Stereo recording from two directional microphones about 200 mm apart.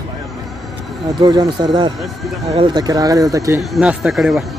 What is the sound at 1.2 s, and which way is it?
Speech, 20° right (ahead or behind).